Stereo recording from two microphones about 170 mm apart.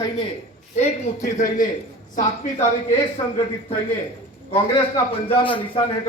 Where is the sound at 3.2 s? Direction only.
25° left (ahead or behind).